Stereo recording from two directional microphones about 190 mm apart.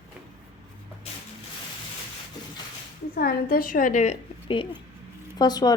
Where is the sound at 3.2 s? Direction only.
50° left (ahead or behind).